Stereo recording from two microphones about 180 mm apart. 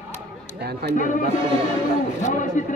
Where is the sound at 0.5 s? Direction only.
65° right (ahead or behind).